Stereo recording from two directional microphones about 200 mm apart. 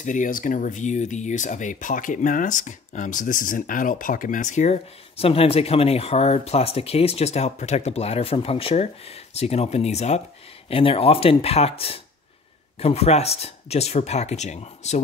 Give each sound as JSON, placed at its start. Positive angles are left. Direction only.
{"t": 0.0, "sound": "speech", "side_deg": 40}